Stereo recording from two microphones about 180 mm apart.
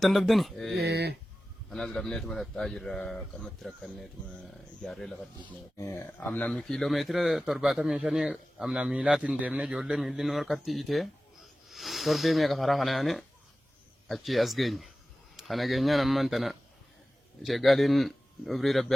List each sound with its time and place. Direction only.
0.0 s speech: centre (ahead or behind)
0.8 s a sound: 65° right (ahead or behind)
1.7 s speech: centre (ahead or behind)
5.7 s speech: 15° left (ahead or behind)